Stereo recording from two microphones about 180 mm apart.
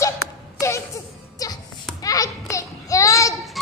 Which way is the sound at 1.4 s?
20° left (ahead or behind).